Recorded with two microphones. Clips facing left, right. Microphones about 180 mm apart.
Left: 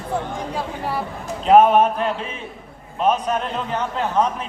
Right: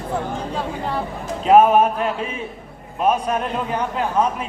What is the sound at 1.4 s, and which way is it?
A man's voice, 10° right (ahead or behind).